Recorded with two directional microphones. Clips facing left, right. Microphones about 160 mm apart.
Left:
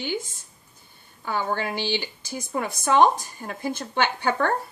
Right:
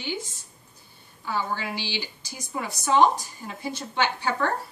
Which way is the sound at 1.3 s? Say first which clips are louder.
Left 3 dB; 55° left (ahead or behind).